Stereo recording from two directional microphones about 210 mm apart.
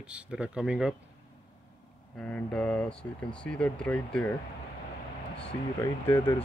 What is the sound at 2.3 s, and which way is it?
Speech, 5° left (ahead or behind).